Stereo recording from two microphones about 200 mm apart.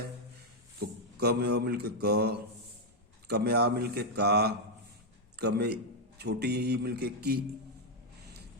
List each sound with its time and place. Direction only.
0.8 s a man's voice: 55° right (ahead or behind)